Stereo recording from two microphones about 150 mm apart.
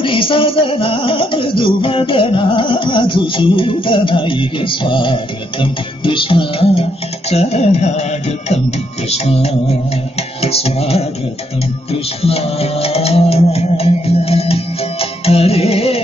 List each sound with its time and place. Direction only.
0.0 s music: 35° left (ahead or behind)